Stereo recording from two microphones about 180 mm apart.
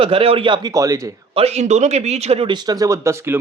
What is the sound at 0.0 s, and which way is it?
A man's voice, 30° right (ahead or behind).